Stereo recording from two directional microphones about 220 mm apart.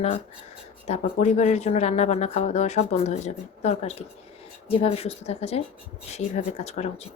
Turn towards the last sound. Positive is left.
turn(degrees=30)  # may be behind; listen again after turning